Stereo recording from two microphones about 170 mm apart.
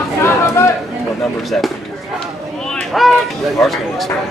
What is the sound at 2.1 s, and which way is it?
Speech, 5° left (ahead or behind).